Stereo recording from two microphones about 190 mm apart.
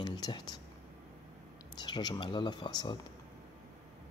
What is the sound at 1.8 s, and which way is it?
Speech, 20° left (ahead or behind).